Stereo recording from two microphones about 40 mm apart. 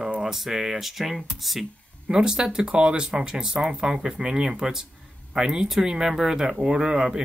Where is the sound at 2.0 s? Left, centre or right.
Centre.